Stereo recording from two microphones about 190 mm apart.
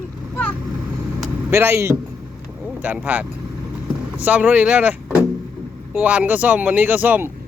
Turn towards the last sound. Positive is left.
turn(degrees=-10)  # may be behind; listen again after turning